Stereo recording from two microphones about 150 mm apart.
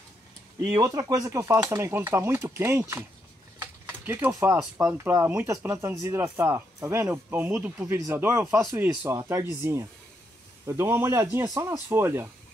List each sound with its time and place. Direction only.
0.7 s speech: 20° right (ahead or behind)